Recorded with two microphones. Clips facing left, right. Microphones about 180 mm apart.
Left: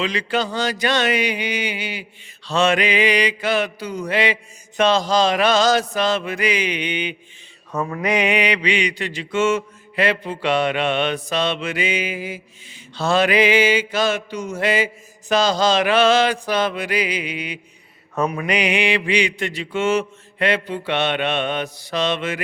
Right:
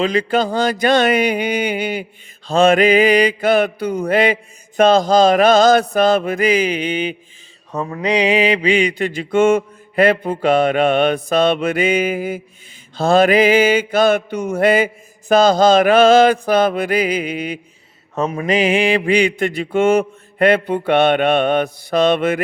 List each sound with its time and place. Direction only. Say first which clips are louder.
0.0 s mantra: right 6 dB; 50° right (ahead or behind)
7.7 s mantra: right 2 dB; 25° right (ahead or behind); by 22.4 s 55° right (ahead or behind)